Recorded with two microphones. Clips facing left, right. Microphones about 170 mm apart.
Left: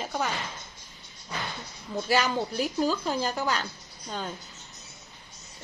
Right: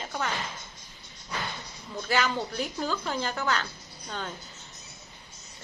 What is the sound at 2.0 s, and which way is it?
Speech, 10° left (ahead or behind).